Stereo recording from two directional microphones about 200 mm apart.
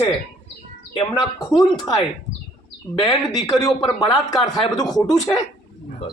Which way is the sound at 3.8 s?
20° left (ahead or behind).